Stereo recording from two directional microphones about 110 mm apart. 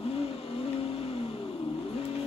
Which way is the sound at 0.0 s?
60° left (ahead or behind).